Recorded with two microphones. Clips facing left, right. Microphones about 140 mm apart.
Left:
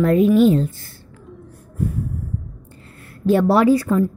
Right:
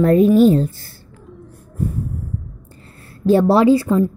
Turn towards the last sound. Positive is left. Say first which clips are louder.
# right 2 dB
turn(degrees=-25)  # may be behind; listen again after turning